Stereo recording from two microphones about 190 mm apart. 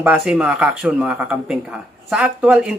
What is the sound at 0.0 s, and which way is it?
Speech, 10° right (ahead or behind).